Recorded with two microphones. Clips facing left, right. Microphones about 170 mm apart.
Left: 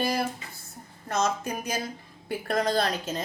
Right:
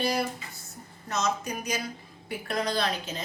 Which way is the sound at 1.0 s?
50° left (ahead or behind).